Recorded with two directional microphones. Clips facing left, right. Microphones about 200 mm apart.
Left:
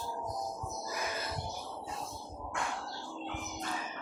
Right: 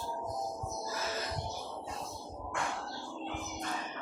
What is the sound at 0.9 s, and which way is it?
Crow, 15° left (ahead or behind).